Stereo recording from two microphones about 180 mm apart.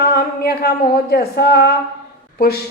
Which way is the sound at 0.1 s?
60° left (ahead or behind).